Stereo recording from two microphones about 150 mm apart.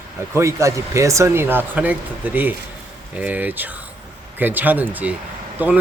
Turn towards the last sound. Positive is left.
turn(degrees=-10)  # may be behind; listen again after turning